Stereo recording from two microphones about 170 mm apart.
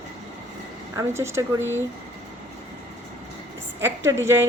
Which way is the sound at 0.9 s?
15° right (ahead or behind).